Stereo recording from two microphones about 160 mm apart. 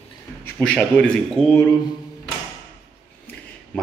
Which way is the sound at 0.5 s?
5° left (ahead or behind).